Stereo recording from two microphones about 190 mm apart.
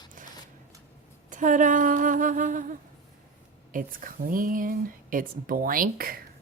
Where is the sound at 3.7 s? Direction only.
45° right (ahead or behind).